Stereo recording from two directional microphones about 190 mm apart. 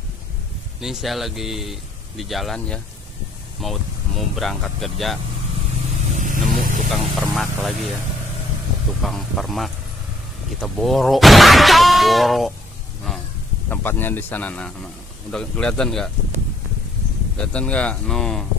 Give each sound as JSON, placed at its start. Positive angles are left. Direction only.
{"t": 0.7, "sound": "speech", "side_deg": 0}
{"t": 6.1, "sound": "vehicle", "side_deg": -45}
{"t": 7.2, "sound": "speech", "side_deg": 0}
{"t": 9.0, "sound": "speech", "side_deg": 0}
{"t": 13.7, "sound": "a man's voice", "side_deg": 10}
{"t": 17.4, "sound": "speech", "side_deg": 5}